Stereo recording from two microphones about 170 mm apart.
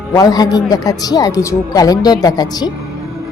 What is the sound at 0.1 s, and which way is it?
Speech, 20° left (ahead or behind).